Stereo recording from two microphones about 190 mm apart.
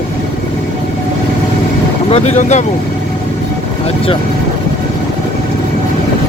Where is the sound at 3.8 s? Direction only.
30° left (ahead or behind).